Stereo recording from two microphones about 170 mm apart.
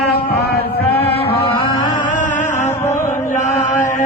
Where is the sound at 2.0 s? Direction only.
50° left (ahead or behind).